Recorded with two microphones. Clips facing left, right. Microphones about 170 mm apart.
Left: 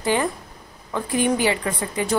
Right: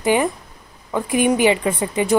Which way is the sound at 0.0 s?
15° right (ahead or behind).